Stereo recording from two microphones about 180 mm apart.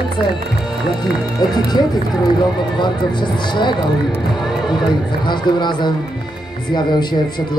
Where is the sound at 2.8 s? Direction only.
25° left (ahead or behind).